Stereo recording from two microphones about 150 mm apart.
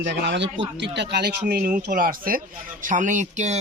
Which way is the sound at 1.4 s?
75° right (ahead or behind).